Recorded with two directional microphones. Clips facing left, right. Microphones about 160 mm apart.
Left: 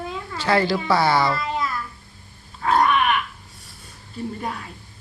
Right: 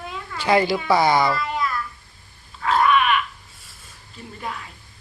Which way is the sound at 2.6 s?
40° left (ahead or behind).